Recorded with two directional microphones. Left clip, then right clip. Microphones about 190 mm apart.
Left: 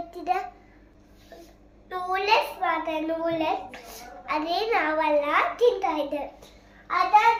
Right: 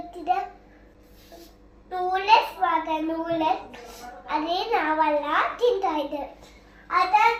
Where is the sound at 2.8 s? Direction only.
15° left (ahead or behind).